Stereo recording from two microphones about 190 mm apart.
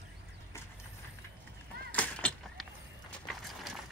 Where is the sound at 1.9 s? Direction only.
5° left (ahead or behind).